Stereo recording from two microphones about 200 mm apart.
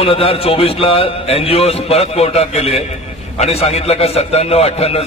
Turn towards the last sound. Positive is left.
turn(degrees=30)  # may be behind; listen again after turning